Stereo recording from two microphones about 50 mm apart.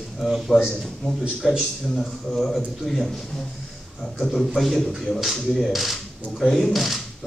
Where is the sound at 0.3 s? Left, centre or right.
Centre.